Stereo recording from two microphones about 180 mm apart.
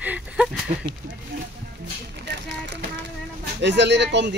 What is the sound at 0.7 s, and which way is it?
Speech, 45° right (ahead or behind).